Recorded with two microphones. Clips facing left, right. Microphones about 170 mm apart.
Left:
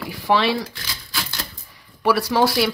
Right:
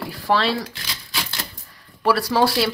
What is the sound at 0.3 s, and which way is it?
Speech, 5° left (ahead or behind).